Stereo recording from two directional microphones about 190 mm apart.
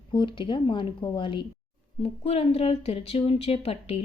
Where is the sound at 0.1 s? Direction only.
25° left (ahead or behind).